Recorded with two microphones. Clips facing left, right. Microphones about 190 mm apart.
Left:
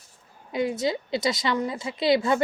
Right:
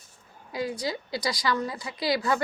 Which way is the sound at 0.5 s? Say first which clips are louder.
Left 5 dB; 20° left (ahead or behind).